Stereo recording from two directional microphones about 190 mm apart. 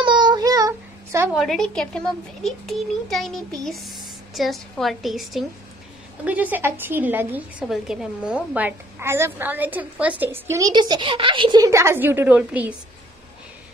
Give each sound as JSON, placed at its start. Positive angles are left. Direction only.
{"t": 0.0, "sound": "child singing", "side_deg": -25}
{"t": 1.3, "sound": "a child's voice", "side_deg": 0}